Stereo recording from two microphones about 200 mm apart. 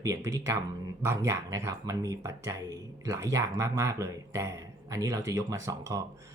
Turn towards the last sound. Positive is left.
turn(degrees=-15)  # may be behind; listen again after turning